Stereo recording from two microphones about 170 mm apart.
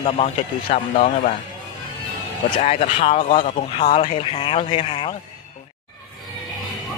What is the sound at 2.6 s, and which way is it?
Speech, 35° left (ahead or behind).